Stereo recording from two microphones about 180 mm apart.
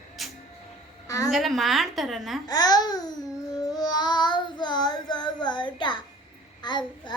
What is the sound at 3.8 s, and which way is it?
Child singing, 20° left (ahead or behind).